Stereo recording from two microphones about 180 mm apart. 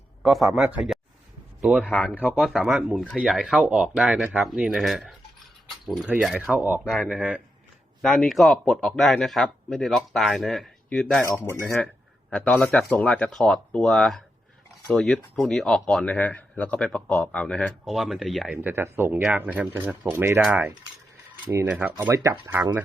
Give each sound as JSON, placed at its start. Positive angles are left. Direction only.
{"t": 0.2, "sound": "speech", "side_deg": 0}
{"t": 2.2, "sound": "speech", "side_deg": -5}
{"t": 11.2, "sound": "speech", "side_deg": 15}